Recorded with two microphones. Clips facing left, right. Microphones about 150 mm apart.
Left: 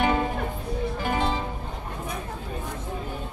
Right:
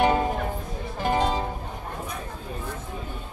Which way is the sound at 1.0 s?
40° right (ahead or behind).